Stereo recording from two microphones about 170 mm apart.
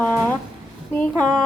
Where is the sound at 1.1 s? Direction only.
20° right (ahead or behind).